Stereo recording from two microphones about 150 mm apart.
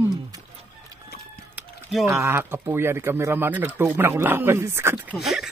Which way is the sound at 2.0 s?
15° right (ahead or behind).